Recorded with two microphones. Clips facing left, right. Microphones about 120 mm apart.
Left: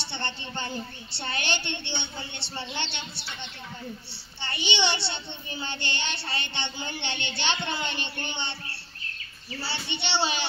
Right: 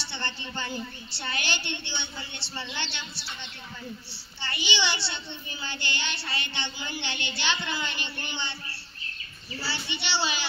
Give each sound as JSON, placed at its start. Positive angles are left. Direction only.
{"t": 0.0, "sound": "a child's voice", "side_deg": 20}
{"t": 9.6, "sound": "a child's voice", "side_deg": 25}